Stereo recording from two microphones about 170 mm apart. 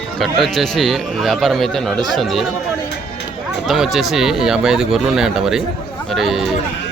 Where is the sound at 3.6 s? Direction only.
Centre (ahead or behind).